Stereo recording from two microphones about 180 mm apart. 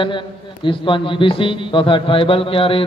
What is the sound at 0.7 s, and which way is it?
A man's voice, 30° left (ahead or behind).